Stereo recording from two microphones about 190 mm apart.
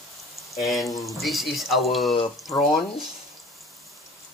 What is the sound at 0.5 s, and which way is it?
Speech, centre (ahead or behind).